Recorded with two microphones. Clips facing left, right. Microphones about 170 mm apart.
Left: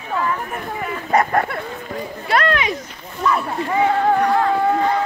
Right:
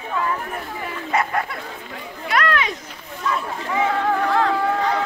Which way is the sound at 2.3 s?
30° left (ahead or behind).